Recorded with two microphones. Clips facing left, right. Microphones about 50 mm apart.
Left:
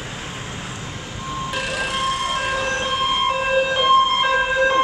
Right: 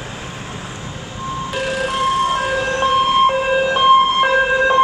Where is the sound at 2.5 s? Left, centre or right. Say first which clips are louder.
Right 5 dB; centre.